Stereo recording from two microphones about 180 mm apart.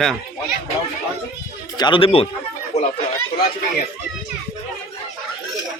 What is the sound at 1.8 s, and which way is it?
Speech, 30° left (ahead or behind).